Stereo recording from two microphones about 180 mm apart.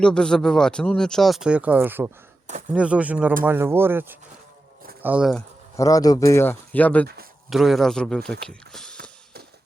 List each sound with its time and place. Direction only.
0.0 s speech: 5° left (ahead or behind)
5.7 s speech: 20° left (ahead or behind)